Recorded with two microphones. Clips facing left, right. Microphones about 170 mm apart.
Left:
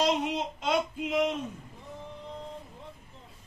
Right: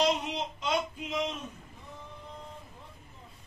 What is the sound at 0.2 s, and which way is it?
Speech, 55° left (ahead or behind).